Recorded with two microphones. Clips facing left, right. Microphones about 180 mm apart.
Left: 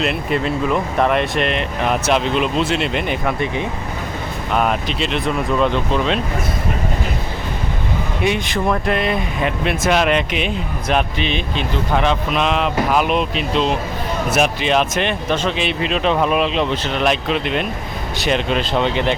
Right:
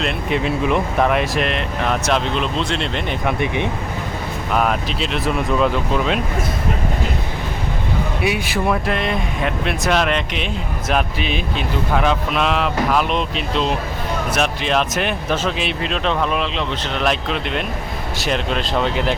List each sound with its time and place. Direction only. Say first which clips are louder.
0.9 s speech: left 1 dB; centre (ahead or behind)
3.2 s speech: even; 15° right (ahead or behind)
4.5 s speech: left 1 dB; centre (ahead or behind)
8.2 s speech: left 3 dB; 5° right (ahead or behind); by 16.9 s 10° left (ahead or behind)
17.0 s speech: left 2 dB; centre (ahead or behind)